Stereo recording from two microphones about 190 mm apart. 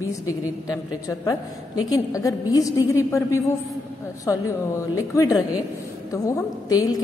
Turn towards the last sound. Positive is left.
turn(degrees=15)  # may be behind; listen again after turning